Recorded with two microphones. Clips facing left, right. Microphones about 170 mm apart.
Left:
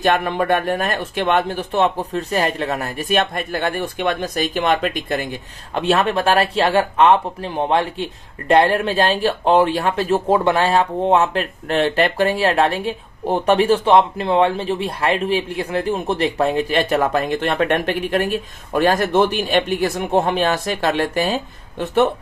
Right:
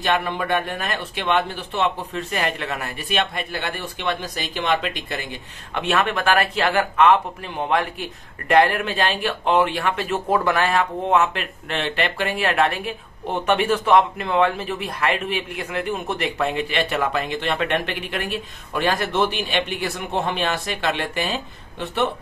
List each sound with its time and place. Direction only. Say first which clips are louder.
0.0 s speech: left 5 dB; 50° left (ahead or behind)
5.8 s speech: left 4 dB; 35° left (ahead or behind)